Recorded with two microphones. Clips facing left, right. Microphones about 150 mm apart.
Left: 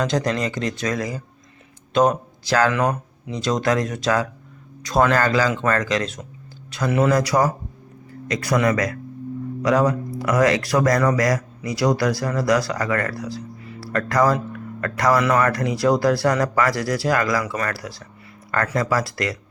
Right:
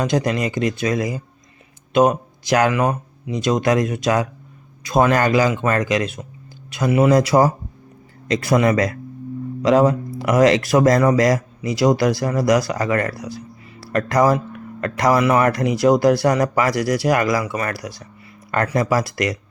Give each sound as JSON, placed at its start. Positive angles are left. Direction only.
{"t": 0.0, "sound": "speech", "side_deg": -10}
{"t": 7.1, "sound": "speech", "side_deg": -25}